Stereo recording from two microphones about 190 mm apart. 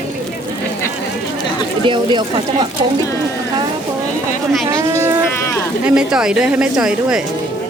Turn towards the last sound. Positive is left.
turn(degrees=-5)  # may be behind; listen again after turning